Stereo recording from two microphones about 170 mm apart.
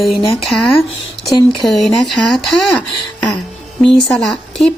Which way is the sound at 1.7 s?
Centre (ahead or behind).